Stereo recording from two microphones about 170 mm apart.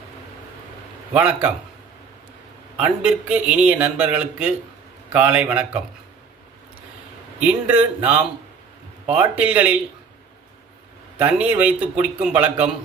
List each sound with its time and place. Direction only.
1.1 s a man's voice: 5° right (ahead or behind)
2.7 s a man's voice: 5° right (ahead or behind)
7.3 s a man's voice: 10° right (ahead or behind)
11.2 s a man's voice: 10° right (ahead or behind)